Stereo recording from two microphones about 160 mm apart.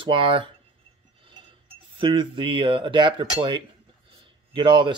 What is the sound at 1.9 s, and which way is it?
Speech, 30° right (ahead or behind).